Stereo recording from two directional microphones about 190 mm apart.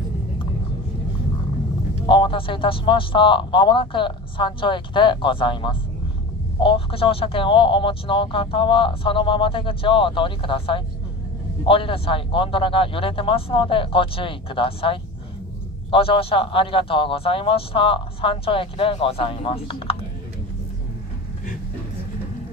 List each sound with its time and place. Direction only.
2.0 s speech: 25° left (ahead or behind)